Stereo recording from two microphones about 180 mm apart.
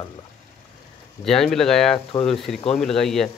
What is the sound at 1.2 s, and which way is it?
Speech, centre (ahead or behind).